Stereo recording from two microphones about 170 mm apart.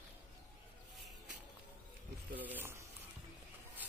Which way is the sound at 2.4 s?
10° right (ahead or behind).